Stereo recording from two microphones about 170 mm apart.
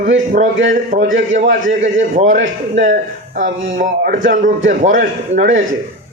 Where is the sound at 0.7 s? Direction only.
45° right (ahead or behind).